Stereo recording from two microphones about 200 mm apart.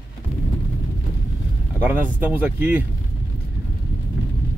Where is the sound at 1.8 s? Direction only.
10° right (ahead or behind).